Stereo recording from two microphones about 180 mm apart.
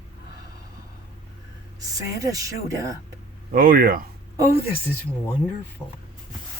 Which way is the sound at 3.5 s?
50° right (ahead or behind).